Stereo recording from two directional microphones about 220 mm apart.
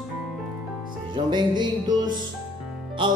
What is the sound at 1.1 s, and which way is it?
Music, 20° right (ahead or behind).